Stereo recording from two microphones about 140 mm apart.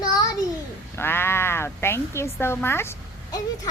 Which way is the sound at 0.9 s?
15° left (ahead or behind).